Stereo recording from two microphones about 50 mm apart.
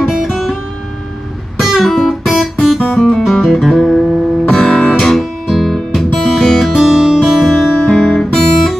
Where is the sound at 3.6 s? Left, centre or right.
Centre.